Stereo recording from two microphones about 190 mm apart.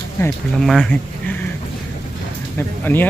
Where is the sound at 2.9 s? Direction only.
10° left (ahead or behind).